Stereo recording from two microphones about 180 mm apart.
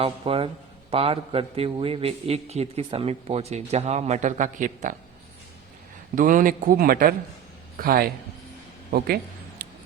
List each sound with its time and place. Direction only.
0.0 s a man's voice: 30° right (ahead or behind)
6.1 s a man's voice: 45° right (ahead or behind)
8.9 s a sound: 60° right (ahead or behind)